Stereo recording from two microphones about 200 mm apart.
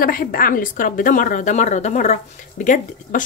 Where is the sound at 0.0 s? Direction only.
45° left (ahead or behind).